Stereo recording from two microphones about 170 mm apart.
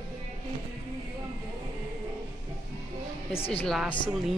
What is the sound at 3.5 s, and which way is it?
Speech, 5° left (ahead or behind).